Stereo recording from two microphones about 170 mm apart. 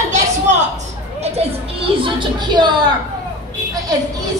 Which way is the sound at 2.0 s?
25° right (ahead or behind).